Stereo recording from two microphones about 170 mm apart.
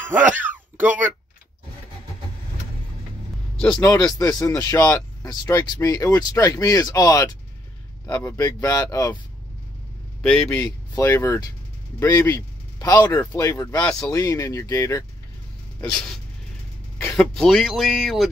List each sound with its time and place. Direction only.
0.4 s a sound: 10° right (ahead or behind)
3.5 s speech: 5° left (ahead or behind)
3.9 s speech: 20° left (ahead or behind)
10.2 s speech: 5° left (ahead or behind)
13.7 s speech: 5° left (ahead or behind)
14.1 s speech: 20° left (ahead or behind)
15.8 s speech: 5° left (ahead or behind)
17.2 s speech: 5° left (ahead or behind)